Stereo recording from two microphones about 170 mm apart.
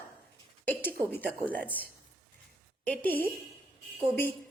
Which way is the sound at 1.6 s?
10° left (ahead or behind).